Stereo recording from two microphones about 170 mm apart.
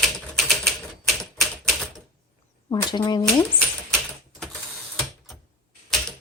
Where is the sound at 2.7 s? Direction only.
25° left (ahead or behind).